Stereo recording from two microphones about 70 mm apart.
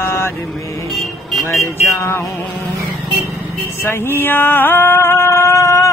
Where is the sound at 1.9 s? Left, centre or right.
Left.